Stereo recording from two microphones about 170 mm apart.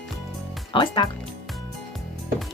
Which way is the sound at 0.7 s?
30° left (ahead or behind).